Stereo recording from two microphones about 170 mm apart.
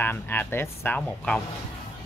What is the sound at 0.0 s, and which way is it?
Speech, 10° left (ahead or behind).